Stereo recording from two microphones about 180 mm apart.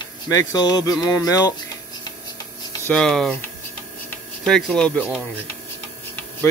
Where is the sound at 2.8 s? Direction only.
5° left (ahead or behind).